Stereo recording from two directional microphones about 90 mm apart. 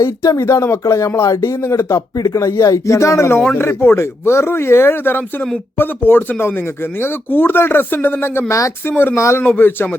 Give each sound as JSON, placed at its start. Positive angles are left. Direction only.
{"t": 0.0, "sound": "speech", "side_deg": 30}